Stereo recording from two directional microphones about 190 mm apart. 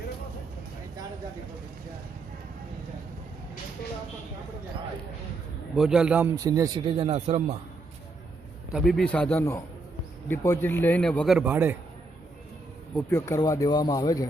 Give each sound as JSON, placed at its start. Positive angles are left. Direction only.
{"t": 5.7, "sound": "a man's voice", "side_deg": -5}
{"t": 6.4, "sound": "speech", "side_deg": -20}
{"t": 8.7, "sound": "a man's voice", "side_deg": 0}
{"t": 11.3, "sound": "a man's voice", "side_deg": -10}
{"t": 13.0, "sound": "speech", "side_deg": 15}